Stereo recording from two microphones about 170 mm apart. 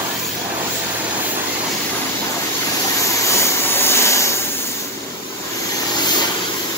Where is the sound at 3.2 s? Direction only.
15° left (ahead or behind).